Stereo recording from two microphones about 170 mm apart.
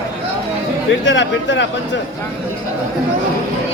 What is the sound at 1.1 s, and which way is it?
Speech, 90° left.